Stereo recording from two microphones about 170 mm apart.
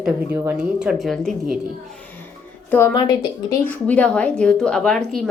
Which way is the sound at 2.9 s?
25° left (ahead or behind).